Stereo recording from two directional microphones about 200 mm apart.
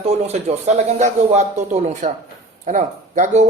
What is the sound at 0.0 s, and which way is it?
Speech, 35° right (ahead or behind).